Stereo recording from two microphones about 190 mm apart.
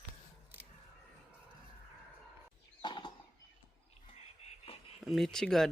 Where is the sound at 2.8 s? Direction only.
25° left (ahead or behind).